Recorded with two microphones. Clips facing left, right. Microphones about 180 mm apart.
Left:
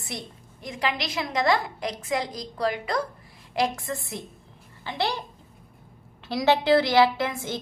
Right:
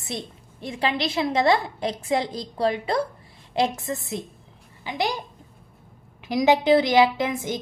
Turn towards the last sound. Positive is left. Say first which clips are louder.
# right 3 dB
turn(degrees=-15)  # may be behind; listen again after turning